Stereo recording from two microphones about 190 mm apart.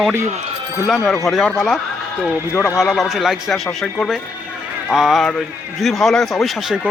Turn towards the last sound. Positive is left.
turn(degrees=0)  # may be behind; listen again after turning